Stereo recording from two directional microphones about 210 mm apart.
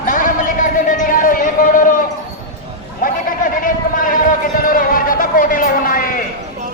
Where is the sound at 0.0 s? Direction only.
40° left (ahead or behind).